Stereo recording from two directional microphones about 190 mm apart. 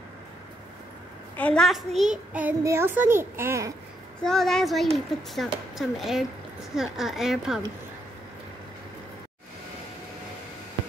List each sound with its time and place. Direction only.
1.3 s a child's voice: 5° left (ahead or behind); by 3.7 s 15° right (ahead or behind)
4.2 s speech: centre (ahead or behind)